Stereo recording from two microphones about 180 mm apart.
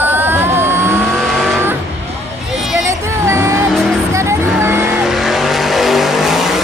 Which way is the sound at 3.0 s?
15° right (ahead or behind).